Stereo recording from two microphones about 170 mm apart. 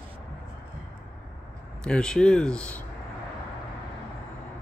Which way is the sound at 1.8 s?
5° left (ahead or behind).